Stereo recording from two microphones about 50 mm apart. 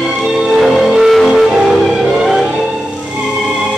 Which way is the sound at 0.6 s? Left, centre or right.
Centre.